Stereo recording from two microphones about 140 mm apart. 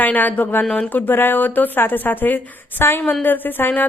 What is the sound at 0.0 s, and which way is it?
A woman's voice, 10° left (ahead or behind).